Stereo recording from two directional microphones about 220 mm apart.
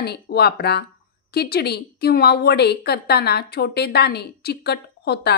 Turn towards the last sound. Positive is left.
turn(degrees=50)  # may be behind; listen again after turning